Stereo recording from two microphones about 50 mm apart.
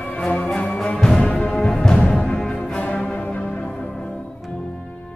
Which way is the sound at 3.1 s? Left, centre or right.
Left.